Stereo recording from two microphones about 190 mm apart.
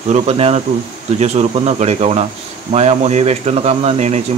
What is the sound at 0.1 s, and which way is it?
Speech, 35° right (ahead or behind).